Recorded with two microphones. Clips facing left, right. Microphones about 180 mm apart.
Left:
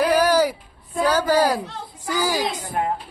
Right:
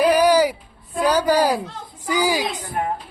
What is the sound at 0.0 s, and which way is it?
Music, 15° right (ahead or behind).